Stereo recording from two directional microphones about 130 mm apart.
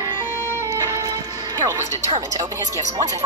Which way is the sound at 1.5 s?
25° right (ahead or behind).